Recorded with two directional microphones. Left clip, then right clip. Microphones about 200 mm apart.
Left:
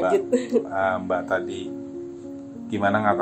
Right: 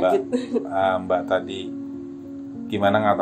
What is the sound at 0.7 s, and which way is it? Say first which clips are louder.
Speech: right 3 dB; 30° right (ahead or behind).